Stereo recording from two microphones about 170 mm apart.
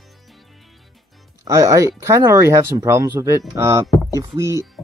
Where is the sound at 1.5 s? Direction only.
15° right (ahead or behind).